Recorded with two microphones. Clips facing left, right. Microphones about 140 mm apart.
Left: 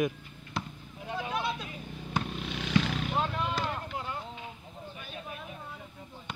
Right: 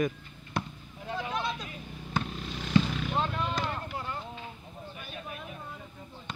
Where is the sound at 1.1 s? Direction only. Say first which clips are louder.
Even; 10° left (ahead or behind).